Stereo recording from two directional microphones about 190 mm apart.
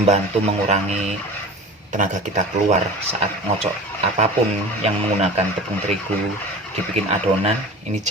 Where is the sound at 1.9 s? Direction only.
40° right (ahead or behind).